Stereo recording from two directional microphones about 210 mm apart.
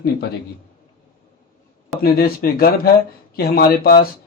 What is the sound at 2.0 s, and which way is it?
Speech, 45° left (ahead or behind).